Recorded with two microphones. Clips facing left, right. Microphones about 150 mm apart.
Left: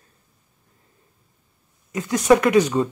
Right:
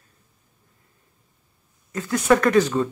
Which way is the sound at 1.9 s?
20° left (ahead or behind).